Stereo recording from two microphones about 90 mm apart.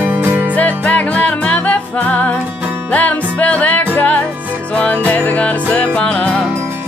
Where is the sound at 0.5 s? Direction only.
15° left (ahead or behind).